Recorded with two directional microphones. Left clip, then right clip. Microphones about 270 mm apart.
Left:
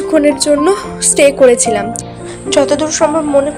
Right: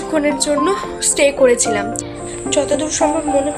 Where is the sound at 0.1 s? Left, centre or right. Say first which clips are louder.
Left 6 dB; centre.